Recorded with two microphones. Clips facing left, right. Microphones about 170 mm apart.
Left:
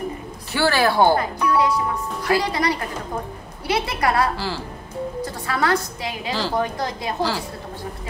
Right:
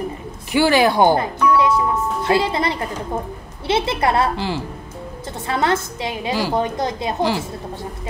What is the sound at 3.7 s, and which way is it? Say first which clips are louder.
A woman's voice: right 3 dB; 25° right (ahead or behind).